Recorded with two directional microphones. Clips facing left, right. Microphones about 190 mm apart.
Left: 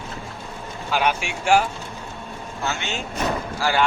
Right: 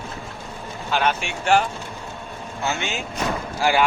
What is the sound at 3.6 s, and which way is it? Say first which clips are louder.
Speech: right 3 dB; 20° right (ahead or behind).